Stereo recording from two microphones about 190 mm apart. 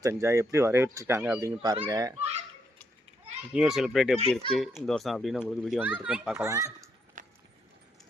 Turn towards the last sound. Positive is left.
turn(degrees=-15)  # may be behind; listen again after turning